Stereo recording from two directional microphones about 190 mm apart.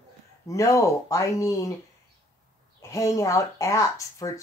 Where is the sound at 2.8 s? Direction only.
15° left (ahead or behind).